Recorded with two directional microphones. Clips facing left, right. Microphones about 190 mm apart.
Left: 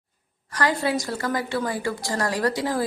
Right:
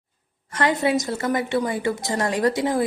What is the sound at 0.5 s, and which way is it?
A woman's voice, 20° right (ahead or behind).